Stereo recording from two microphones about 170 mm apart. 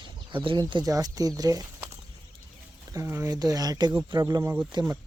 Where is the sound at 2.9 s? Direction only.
15° right (ahead or behind).